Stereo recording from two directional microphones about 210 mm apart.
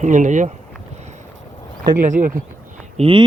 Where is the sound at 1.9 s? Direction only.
40° right (ahead or behind).